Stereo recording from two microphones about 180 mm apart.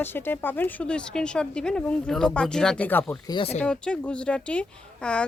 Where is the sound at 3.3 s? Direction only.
30° left (ahead or behind).